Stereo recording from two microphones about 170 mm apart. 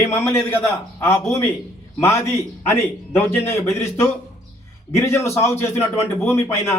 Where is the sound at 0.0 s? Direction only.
15° left (ahead or behind).